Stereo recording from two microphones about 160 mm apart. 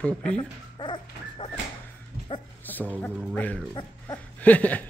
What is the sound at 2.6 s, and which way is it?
Music, 10° left (ahead or behind).